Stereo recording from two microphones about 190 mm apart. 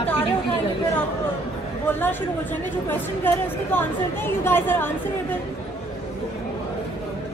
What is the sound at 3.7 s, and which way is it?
Speech, 10° left (ahead or behind).